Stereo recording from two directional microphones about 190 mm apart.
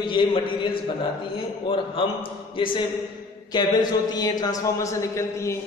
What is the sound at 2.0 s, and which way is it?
A man's voice, 25° left (ahead or behind).